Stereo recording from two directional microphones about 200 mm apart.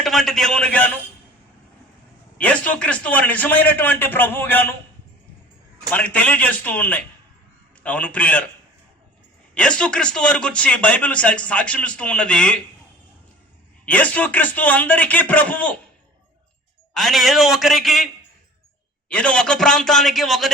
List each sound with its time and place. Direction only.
0.0 s speech: centre (ahead or behind)
2.4 s a man's voice: 5° left (ahead or behind)
5.9 s a man's voice: 5° left (ahead or behind)
9.6 s speech: 5° left (ahead or behind)
13.8 s a man's voice: 5° left (ahead or behind)
16.9 s speech: centre (ahead or behind)